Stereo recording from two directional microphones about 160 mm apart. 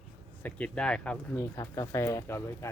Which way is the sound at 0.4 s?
5° left (ahead or behind).